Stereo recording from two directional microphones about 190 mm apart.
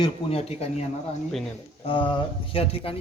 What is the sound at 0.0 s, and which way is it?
Speech, 30° left (ahead or behind).